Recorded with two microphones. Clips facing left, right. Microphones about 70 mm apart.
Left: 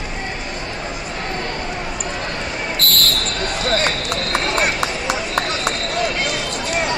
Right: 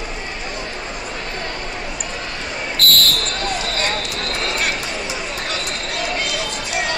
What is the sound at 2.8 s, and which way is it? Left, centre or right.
Basketball bounce, left.